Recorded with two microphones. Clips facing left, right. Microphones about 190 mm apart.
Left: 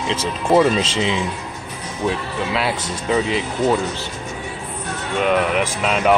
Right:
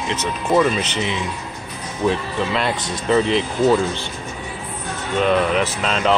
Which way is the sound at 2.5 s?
5° left (ahead or behind).